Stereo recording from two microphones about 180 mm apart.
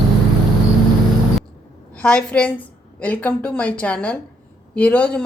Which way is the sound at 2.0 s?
5° left (ahead or behind).